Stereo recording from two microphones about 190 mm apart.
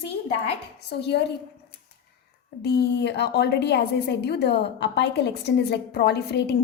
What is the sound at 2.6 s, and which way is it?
A woman's voice, 60° left (ahead or behind).